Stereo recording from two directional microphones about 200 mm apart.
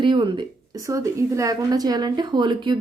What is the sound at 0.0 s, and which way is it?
Speech, 25° right (ahead or behind).